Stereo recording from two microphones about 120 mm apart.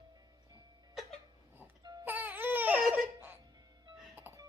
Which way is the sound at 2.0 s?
15° right (ahead or behind).